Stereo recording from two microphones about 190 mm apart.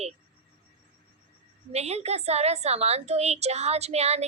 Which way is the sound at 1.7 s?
35° right (ahead or behind).